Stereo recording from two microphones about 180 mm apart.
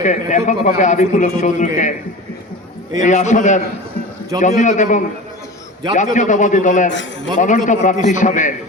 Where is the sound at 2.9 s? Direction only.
40° left (ahead or behind).